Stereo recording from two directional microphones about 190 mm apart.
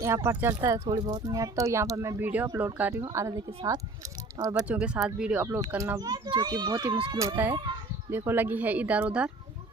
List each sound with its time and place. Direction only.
0.0 s speech: 15° right (ahead or behind)
4.4 s a child's voice: 20° right (ahead or behind)
4.6 s a child's voice: 5° right (ahead or behind)